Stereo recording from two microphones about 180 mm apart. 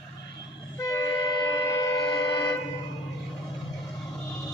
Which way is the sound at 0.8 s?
20° left (ahead or behind).